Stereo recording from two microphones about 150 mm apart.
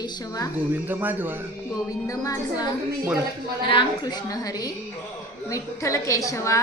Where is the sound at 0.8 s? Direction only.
10° right (ahead or behind).